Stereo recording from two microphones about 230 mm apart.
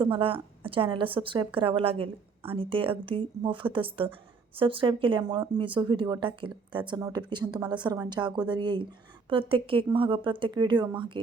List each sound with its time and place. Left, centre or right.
0.0 s speech: right